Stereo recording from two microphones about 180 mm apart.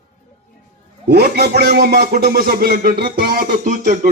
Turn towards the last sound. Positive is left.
turn(degrees=-45)  # may be behind; listen again after turning